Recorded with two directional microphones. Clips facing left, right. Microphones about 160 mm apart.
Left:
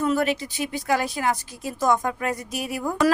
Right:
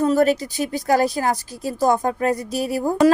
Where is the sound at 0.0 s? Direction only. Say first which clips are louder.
Right 6 dB; 40° right (ahead or behind).